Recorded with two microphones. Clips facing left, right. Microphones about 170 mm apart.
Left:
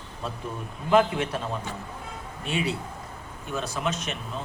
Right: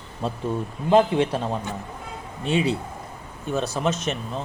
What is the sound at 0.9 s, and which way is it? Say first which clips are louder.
Speech: right 4 dB; 30° right (ahead or behind).